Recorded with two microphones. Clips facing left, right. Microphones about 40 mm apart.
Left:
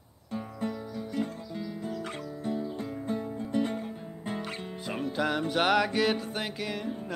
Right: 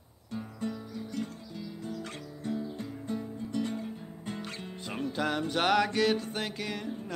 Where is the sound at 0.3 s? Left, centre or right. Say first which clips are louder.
Left 2 dB; centre.